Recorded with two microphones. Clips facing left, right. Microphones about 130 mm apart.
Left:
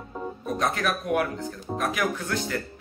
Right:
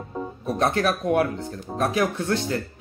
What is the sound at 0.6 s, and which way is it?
Speech, 30° right (ahead or behind).